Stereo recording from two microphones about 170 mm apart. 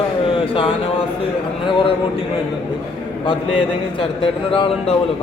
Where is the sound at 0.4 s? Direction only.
30° left (ahead or behind).